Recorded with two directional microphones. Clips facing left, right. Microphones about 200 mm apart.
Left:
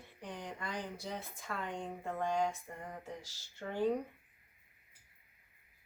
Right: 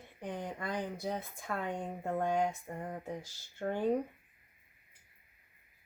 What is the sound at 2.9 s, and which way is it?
Speech, 50° right (ahead or behind).